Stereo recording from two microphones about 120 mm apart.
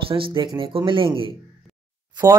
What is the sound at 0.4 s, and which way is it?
Speech, 45° right (ahead or behind).